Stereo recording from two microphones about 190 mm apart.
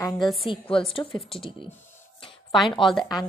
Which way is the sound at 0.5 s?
25° left (ahead or behind).